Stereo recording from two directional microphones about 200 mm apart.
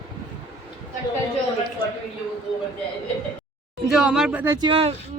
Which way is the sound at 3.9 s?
5° right (ahead or behind).